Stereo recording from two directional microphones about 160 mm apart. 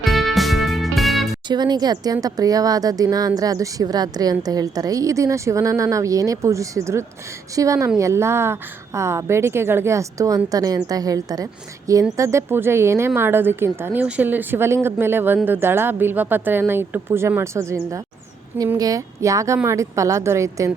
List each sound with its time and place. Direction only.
0.0 s music: centre (ahead or behind)
1.5 s speech: 25° right (ahead or behind)